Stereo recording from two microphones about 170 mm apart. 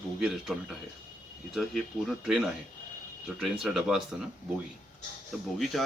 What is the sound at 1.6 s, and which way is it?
A man's voice, centre (ahead or behind).